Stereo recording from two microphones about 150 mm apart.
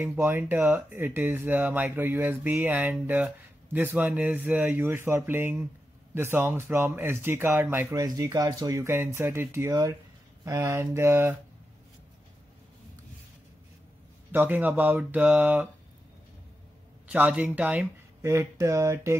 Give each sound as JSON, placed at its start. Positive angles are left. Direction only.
{"t": 0.0, "sound": "speech", "side_deg": -15}
{"t": 14.3, "sound": "speech", "side_deg": -10}
{"t": 17.1, "sound": "speech", "side_deg": -10}